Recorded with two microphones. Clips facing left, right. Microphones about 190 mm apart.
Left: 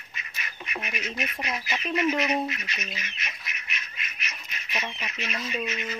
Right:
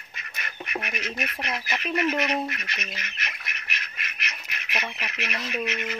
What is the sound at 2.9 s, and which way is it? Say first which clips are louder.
Duck: right 1 dB; 70° right (ahead or behind).